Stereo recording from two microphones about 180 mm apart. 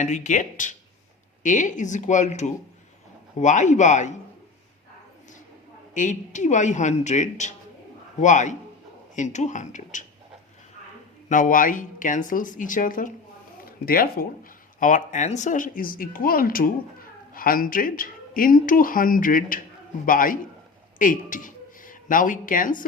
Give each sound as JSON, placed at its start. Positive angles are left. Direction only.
{"t": 0.0, "sound": "a man's voice", "side_deg": 40}
{"t": 5.9, "sound": "speech", "side_deg": 45}
{"t": 11.3, "sound": "speech", "side_deg": 45}